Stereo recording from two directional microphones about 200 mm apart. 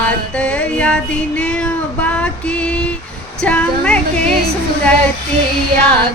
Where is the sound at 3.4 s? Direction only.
5° left (ahead or behind).